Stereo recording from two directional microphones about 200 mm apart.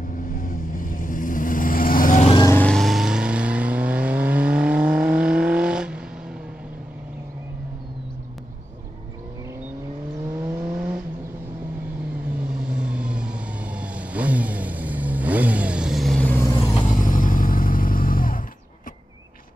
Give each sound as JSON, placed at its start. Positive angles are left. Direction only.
{"t": 0.2, "sound": "vehicle", "side_deg": 45}
{"t": 2.2, "sound": "vehicle", "side_deg": 20}
{"t": 2.5, "sound": "vehicle", "side_deg": 5}
{"t": 10.4, "sound": "vehicle", "side_deg": -15}
{"t": 12.6, "sound": "vehicle", "side_deg": -5}
{"t": 16.5, "sound": "vehicle", "side_deg": 20}
{"t": 17.0, "sound": "vehicle", "side_deg": 40}